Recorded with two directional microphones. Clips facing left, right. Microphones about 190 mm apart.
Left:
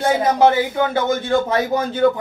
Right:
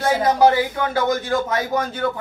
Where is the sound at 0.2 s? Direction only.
25° left (ahead or behind).